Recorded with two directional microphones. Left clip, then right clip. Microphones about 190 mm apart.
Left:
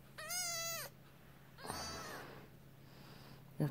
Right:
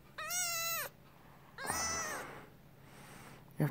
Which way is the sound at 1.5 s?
25° right (ahead or behind).